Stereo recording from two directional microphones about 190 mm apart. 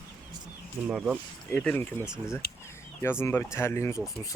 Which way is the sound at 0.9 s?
5° right (ahead or behind).